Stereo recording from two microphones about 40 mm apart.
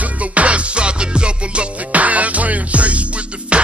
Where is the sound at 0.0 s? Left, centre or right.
Right.